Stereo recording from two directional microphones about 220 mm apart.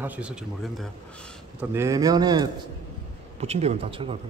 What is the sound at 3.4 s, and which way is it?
Speech, 30° right (ahead or behind).